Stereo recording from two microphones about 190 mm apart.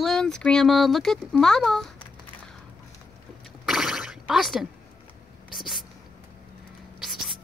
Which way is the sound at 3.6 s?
5° right (ahead or behind).